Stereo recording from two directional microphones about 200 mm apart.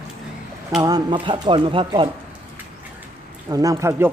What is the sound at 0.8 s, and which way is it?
Speech, 20° right (ahead or behind).